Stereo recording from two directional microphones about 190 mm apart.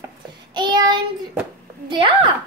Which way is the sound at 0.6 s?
25° right (ahead or behind).